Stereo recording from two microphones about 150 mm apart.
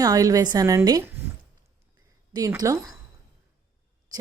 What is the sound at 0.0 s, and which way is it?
A woman's voice, 25° right (ahead or behind).